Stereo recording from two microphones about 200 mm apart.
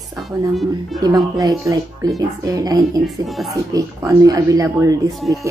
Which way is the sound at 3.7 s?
20° right (ahead or behind).